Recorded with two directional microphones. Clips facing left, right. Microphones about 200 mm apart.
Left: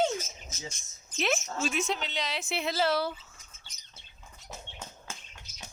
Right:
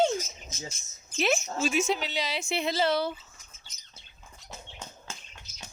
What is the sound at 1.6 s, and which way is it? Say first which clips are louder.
Speech: right 6 dB; centre (ahead or behind).